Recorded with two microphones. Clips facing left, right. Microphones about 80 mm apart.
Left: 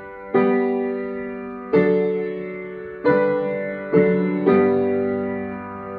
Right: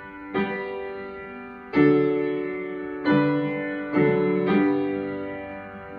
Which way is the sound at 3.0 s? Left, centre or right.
Left.